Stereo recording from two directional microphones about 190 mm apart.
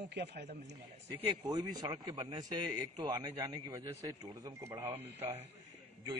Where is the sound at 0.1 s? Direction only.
60° right (ahead or behind).